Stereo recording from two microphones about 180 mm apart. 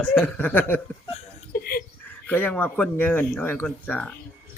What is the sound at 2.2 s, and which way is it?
A man's voice, 10° left (ahead or behind).